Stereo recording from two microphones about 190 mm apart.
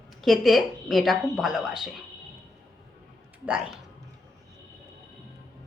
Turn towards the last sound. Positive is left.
turn(degrees=-5)  # may be behind; listen again after turning